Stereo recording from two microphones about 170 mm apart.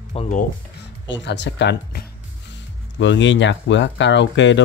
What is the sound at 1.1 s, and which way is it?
Speech, 90° left.